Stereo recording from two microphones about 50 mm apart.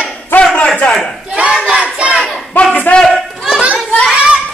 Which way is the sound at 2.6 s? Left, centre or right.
Left.